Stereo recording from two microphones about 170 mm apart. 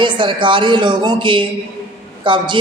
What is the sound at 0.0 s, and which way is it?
A woman's voice, 30° right (ahead or behind).